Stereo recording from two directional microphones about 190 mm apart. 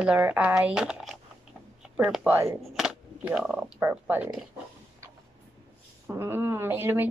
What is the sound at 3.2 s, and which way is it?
A woman's voice, 5° right (ahead or behind).